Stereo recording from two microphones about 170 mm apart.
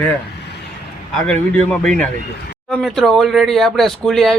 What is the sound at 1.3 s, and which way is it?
Speech, 5° left (ahead or behind).